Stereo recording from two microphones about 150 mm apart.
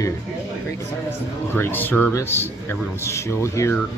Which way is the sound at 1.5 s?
15° left (ahead or behind).